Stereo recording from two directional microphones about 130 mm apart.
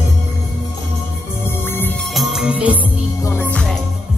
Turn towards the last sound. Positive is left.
turn(degrees=15)  # may be behind; listen again after turning